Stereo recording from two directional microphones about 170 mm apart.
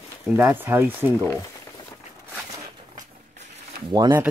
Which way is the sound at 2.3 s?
20° right (ahead or behind).